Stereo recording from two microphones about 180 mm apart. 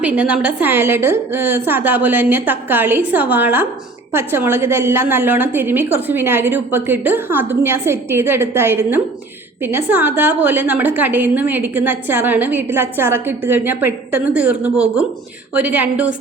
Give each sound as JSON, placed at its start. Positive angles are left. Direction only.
{"t": 0.0, "sound": "a woman's voice", "side_deg": -10}